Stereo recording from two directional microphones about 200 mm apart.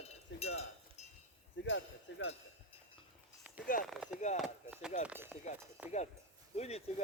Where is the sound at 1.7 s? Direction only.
70° left (ahead or behind).